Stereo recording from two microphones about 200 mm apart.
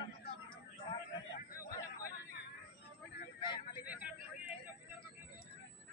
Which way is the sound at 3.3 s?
25° left (ahead or behind).